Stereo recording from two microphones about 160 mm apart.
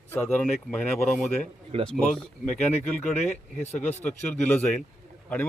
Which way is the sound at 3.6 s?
45° left (ahead or behind).